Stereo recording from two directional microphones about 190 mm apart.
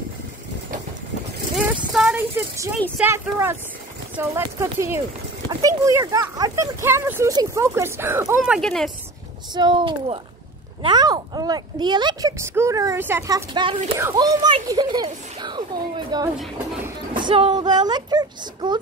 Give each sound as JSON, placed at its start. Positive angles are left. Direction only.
{"t": 1.6, "sound": "a sound", "side_deg": -5}
{"t": 3.0, "sound": "speech", "side_deg": -10}
{"t": 8.5, "sound": "speech", "side_deg": 0}
{"t": 9.5, "sound": "a child's voice", "side_deg": -25}